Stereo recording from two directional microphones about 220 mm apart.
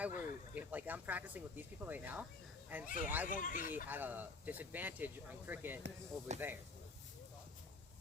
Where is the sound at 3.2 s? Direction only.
35° left (ahead or behind).